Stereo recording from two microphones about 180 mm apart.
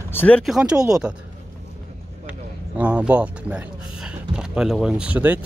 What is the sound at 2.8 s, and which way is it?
Speech, 5° right (ahead or behind).